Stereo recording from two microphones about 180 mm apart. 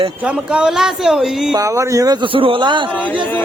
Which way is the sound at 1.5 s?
15° right (ahead or behind).